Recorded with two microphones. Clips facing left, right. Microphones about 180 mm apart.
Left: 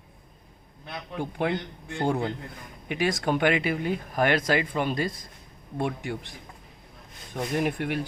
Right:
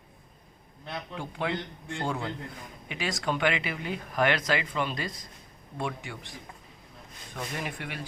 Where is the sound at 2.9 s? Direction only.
55° left (ahead or behind).